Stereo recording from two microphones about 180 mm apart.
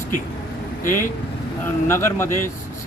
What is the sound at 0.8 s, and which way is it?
Speech, 50° left (ahead or behind).